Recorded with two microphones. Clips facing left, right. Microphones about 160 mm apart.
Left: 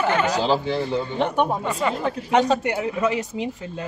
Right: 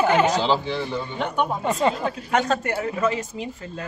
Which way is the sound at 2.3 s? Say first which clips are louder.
Left 3 dB; 15° left (ahead or behind).